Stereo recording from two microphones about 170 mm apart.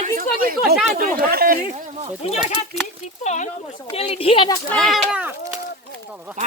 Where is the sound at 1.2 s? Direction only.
60° right (ahead or behind).